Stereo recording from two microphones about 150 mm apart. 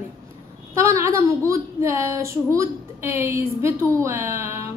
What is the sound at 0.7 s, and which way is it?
A woman's voice, 20° right (ahead or behind).